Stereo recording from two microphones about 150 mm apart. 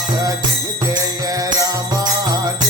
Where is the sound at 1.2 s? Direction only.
25° right (ahead or behind).